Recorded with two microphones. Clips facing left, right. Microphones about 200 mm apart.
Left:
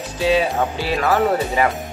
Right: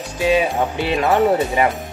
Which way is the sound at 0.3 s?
20° right (ahead or behind).